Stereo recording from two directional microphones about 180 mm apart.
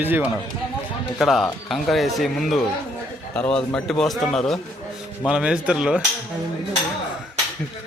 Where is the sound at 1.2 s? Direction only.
Centre (ahead or behind).